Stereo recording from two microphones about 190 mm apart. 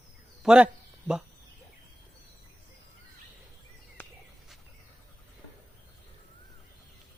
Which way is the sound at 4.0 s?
10° left (ahead or behind).